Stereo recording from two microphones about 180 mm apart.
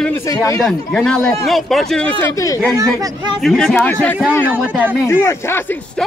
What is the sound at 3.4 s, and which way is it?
Speech, 5° left (ahead or behind).